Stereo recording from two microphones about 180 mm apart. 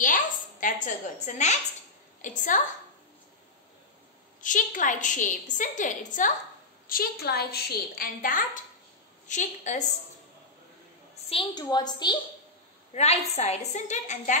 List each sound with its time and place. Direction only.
0.0 s a woman's voice: 45° left (ahead or behind)
4.4 s a woman's voice: 45° left (ahead or behind)
6.9 s a woman's voice: 55° left (ahead or behind)
11.2 s a woman's voice: 30° left (ahead or behind)
12.9 s a woman's voice: 35° left (ahead or behind)